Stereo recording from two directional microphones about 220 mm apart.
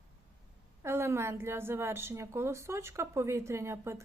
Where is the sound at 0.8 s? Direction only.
10° right (ahead or behind).